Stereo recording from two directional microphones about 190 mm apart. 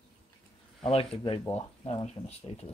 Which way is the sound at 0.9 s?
30° left (ahead or behind).